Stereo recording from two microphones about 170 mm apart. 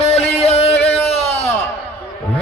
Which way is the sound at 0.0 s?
35° left (ahead or behind).